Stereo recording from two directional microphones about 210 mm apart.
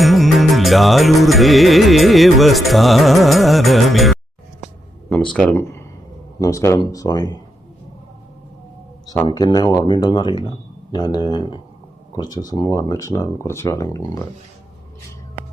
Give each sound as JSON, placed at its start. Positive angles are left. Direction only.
{"t": 0.0, "sound": "music", "side_deg": 0}
{"t": 5.3, "sound": "speech", "side_deg": 5}
{"t": 9.0, "sound": "speech", "side_deg": 15}